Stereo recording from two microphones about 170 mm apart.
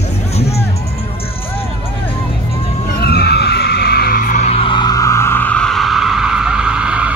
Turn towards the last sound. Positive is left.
turn(degrees=-5)  # may be behind; listen again after turning